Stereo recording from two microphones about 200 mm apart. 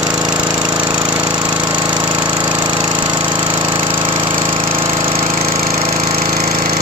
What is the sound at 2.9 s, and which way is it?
Jackhammer, 25° right (ahead or behind).